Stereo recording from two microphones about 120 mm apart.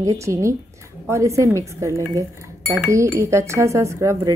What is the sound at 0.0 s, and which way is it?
A woman's voice, 25° right (ahead or behind).